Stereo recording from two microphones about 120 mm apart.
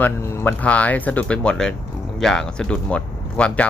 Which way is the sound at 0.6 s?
10° left (ahead or behind).